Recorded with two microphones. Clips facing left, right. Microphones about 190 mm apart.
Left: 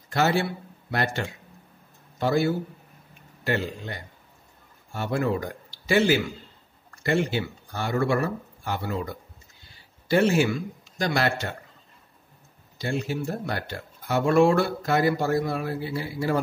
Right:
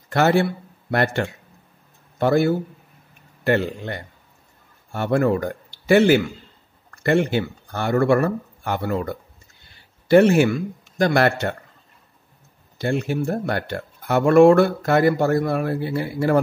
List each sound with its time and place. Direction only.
0.1 s speech: 55° right (ahead or behind)
12.7 s speech: 60° right (ahead or behind)